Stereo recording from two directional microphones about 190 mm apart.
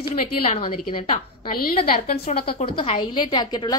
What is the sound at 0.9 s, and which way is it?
Speech, 40° left (ahead or behind).